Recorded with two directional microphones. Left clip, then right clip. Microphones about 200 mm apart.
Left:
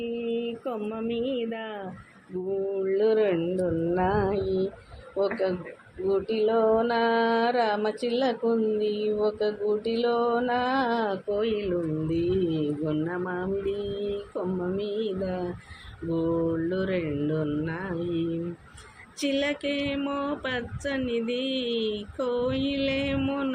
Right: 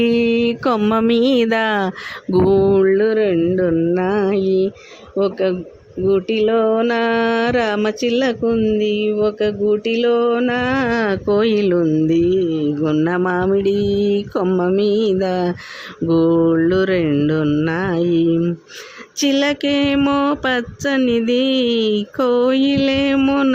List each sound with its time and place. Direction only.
0.0 s mantra: 55° right (ahead or behind)
2.8 s mantra: 45° right (ahead or behind)